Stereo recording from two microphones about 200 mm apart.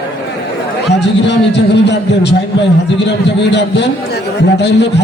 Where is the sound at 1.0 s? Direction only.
60° left (ahead or behind).